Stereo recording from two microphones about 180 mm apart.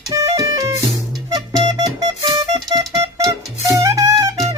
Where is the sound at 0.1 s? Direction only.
20° right (ahead or behind).